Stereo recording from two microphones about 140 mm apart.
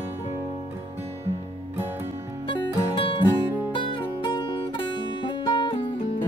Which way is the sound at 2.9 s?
40° left (ahead or behind).